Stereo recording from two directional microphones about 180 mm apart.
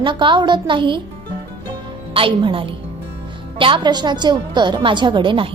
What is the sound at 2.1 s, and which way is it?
A woman's voice, 30° right (ahead or behind).